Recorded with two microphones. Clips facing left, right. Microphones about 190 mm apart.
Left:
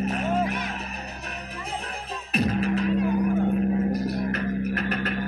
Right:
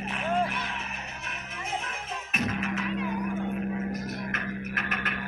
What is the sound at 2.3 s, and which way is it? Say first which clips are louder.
Music: left 7 dB; 35° left (ahead or behind).